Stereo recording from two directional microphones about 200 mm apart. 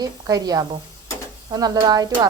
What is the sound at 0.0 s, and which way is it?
Speech, 20° right (ahead or behind).